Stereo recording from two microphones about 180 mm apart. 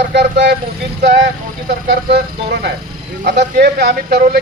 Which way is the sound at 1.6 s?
60° right (ahead or behind).